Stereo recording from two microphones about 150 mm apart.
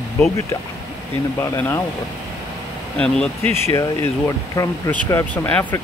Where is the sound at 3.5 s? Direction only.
15° left (ahead or behind).